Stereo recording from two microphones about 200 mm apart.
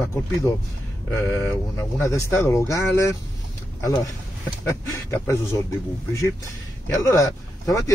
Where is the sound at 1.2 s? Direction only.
15° left (ahead or behind).